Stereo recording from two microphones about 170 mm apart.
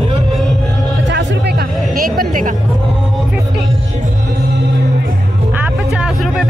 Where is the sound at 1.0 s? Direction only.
90° right.